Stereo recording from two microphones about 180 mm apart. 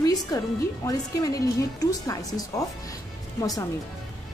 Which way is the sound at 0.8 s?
20° left (ahead or behind).